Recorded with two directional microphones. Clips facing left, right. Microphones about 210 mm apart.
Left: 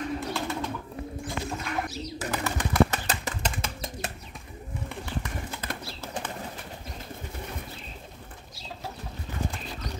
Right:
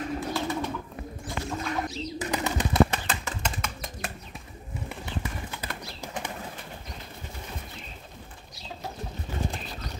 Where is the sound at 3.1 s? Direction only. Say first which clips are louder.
Left 1 dB; 35° left (ahead or behind).